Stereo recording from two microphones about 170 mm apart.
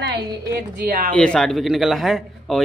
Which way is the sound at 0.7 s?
60° right (ahead or behind).